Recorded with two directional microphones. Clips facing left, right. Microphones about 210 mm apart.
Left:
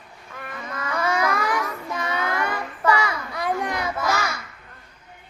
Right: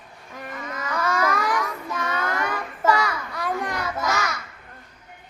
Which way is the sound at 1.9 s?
10° left (ahead or behind).